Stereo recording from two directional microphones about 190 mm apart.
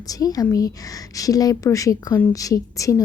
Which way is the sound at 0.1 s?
20° left (ahead or behind).